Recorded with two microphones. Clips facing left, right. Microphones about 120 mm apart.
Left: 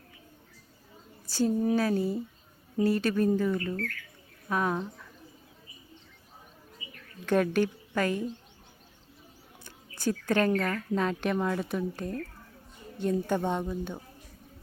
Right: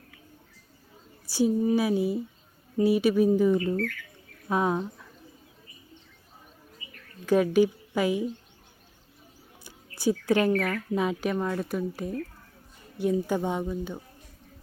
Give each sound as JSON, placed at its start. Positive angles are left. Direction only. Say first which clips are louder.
{"t": 1.3, "sound": "speech", "louder": "right 3 dB", "side_deg": -10}
{"t": 7.3, "sound": "speech", "louder": "right 4 dB", "side_deg": -5}
{"t": 9.6, "sound": "a sound", "louder": "right 4 dB", "side_deg": -10}
{"t": 10.6, "sound": "speech", "louder": "right 2 dB", "side_deg": -10}
{"t": 13.7, "sound": "speech", "louder": "right 2 dB", "side_deg": 0}